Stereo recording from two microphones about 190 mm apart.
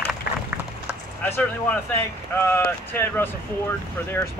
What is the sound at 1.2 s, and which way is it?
Speech, 10° left (ahead or behind).